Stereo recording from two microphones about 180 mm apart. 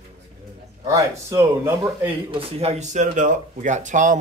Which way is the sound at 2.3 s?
35° right (ahead or behind).